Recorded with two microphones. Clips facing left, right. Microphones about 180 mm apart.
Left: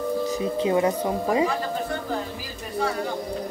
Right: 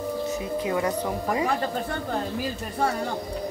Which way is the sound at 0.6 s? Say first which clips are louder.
Left 4 dB; 25° left (ahead or behind).